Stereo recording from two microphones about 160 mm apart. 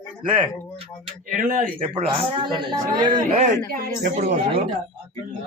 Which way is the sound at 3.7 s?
50° right (ahead or behind).